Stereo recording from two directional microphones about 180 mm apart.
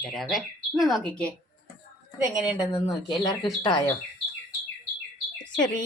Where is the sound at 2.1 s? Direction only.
5° right (ahead or behind).